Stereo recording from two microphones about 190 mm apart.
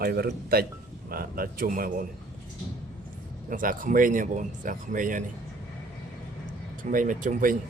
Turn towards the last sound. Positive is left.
turn(degrees=-45)  # may be behind; listen again after turning